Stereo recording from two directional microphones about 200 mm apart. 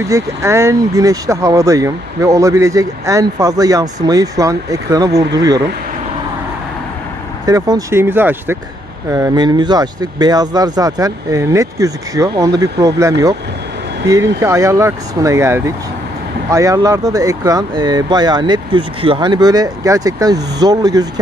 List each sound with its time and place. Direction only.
0.0 s speech: 15° right (ahead or behind)
7.4 s speech: 20° right (ahead or behind)